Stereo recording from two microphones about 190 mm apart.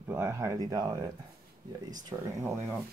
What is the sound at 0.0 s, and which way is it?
Speech, 15° right (ahead or behind).